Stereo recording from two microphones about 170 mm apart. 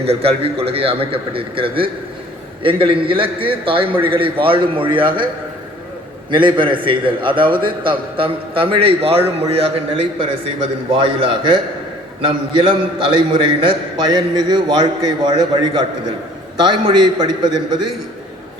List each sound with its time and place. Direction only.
0.0 s a man's voice: 35° right (ahead or behind)
6.3 s a man's voice: 30° right (ahead or behind)